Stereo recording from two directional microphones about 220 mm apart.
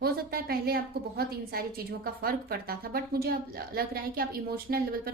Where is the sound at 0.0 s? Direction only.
45° right (ahead or behind).